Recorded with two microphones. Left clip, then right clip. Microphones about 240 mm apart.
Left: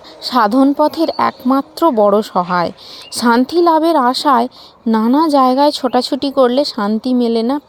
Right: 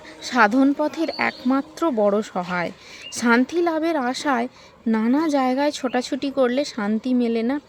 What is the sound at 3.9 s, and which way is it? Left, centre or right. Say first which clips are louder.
Speech: left 11 dB; centre.